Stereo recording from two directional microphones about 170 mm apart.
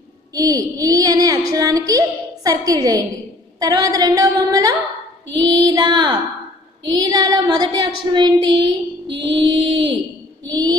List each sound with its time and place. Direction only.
0.3 s a woman's voice: 20° right (ahead or behind)